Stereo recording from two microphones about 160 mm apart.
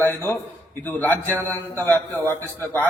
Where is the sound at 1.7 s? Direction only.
10° left (ahead or behind).